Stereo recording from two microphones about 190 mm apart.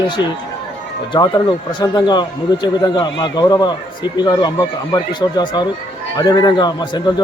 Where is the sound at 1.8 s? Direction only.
20° left (ahead or behind).